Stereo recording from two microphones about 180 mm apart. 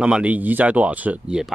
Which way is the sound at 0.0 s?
5° right (ahead or behind).